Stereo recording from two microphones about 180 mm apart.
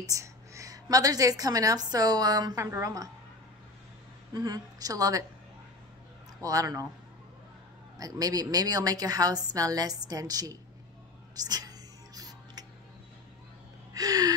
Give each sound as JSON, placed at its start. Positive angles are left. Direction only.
{"t": 0.0, "sound": "a woman's voice", "side_deg": -15}
{"t": 4.3, "sound": "a woman's voice", "side_deg": -20}
{"t": 6.4, "sound": "a woman's voice", "side_deg": -20}
{"t": 8.0, "sound": "a woman's voice", "side_deg": -20}
{"t": 12.2, "sound": "music", "side_deg": -20}
{"t": 13.9, "sound": "gasp", "side_deg": -20}